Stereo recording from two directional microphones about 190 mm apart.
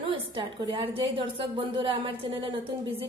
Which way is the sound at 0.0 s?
25° right (ahead or behind).